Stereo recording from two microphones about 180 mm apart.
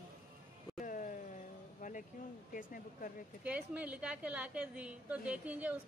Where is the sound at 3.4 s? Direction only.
10° right (ahead or behind).